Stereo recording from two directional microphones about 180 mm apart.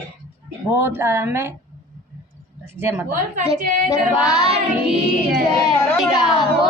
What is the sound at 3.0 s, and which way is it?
Speech, 50° right (ahead or behind).